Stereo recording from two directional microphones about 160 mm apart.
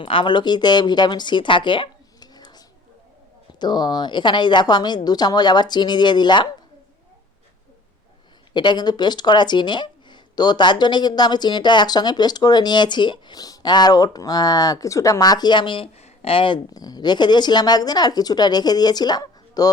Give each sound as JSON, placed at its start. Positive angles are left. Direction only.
{"t": 0.0, "sound": "speech", "side_deg": 30}
{"t": 8.5, "sound": "speech", "side_deg": 30}